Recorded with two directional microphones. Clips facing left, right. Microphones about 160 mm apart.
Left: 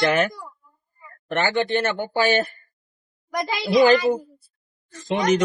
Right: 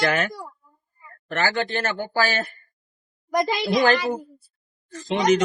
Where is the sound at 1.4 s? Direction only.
20° left (ahead or behind).